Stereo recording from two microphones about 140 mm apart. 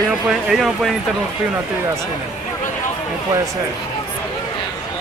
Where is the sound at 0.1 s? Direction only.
5° right (ahead or behind).